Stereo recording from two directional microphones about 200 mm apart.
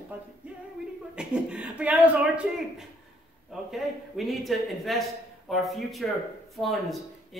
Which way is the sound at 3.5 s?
Centre (ahead or behind).